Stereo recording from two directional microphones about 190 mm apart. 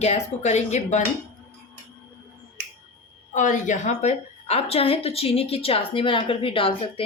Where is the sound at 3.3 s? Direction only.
40° left (ahead or behind).